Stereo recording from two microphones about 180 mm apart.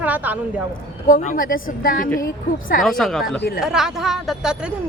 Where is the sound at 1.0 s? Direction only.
45° left (ahead or behind).